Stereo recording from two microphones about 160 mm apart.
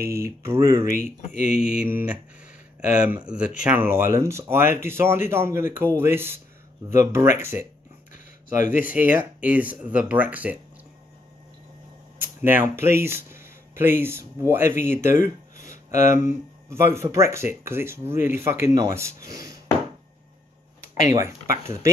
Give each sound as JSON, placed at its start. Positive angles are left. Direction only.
{"t": 0.1, "sound": "speech", "side_deg": -20}
{"t": 1.2, "sound": "speech", "side_deg": 50}
{"t": 1.6, "sound": "speech", "side_deg": -5}
{"t": 8.1, "sound": "a sound", "side_deg": 55}
{"t": 9.2, "sound": "speech", "side_deg": -10}
{"t": 12.2, "sound": "speech", "side_deg": -10}
{"t": 15.7, "sound": "a sound", "side_deg": 50}
{"t": 16.2, "sound": "speech", "side_deg": -15}
{"t": 21.1, "sound": "speech", "side_deg": -20}